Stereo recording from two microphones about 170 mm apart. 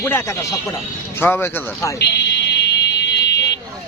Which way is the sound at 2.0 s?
85° left.